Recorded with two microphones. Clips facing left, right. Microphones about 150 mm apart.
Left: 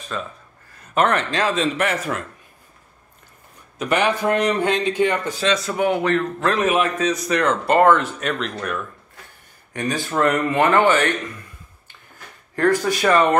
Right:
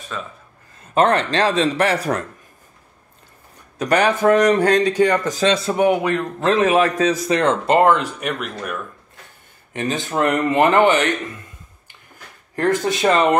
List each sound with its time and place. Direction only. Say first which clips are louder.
0.1 s a man's voice: left 2 dB; 5° right (ahead or behind)
0.9 s speech: right 3 dB; 30° right (ahead or behind)
3.7 s speech: right 3 dB; 40° right (ahead or behind)
5.7 s speech: right 2 dB; 20° right (ahead or behind)
6.5 s speech: right 5 dB; 35° right (ahead or behind); by 8.7 s 10° right (ahead or behind)
9.8 s speech: right 1 dB; 20° right (ahead or behind)
12.5 s speech: even; 20° right (ahead or behind)